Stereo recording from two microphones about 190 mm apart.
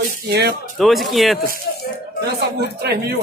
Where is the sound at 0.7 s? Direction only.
Centre (ahead or behind).